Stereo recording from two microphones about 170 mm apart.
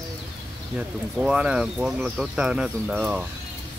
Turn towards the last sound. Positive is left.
turn(degrees=-5)  # may be behind; listen again after turning